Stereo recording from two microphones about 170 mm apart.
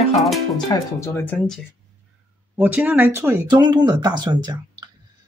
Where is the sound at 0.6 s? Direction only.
20° left (ahead or behind).